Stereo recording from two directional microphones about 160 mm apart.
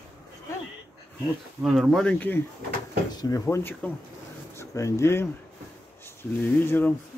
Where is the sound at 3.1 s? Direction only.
25° left (ahead or behind).